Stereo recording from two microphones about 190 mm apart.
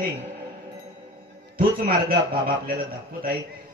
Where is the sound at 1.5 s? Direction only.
45° right (ahead or behind).